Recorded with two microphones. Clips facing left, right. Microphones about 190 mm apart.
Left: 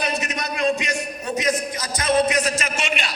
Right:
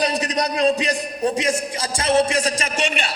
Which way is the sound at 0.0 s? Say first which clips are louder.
Right 5 dB; 35° right (ahead or behind).